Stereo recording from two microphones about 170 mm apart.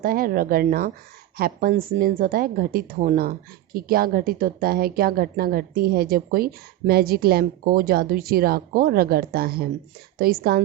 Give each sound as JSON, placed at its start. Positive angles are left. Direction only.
{"t": 0.0, "sound": "a woman's voice", "side_deg": -55}